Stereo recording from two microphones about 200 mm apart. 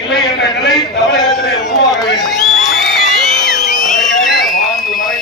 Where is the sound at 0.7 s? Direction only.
Centre (ahead or behind).